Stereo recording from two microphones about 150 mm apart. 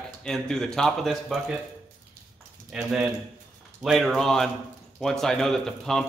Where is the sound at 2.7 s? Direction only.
Centre (ahead or behind).